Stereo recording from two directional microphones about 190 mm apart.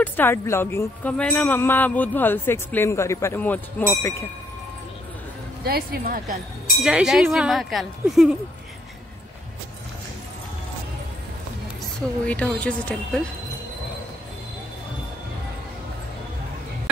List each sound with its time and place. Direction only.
0.0 s speech: 10° left (ahead or behind)
5.6 s speech: 55° right (ahead or behind)
6.8 s a woman's voice: 5° right (ahead or behind)
12.3 s speech: 5° left (ahead or behind)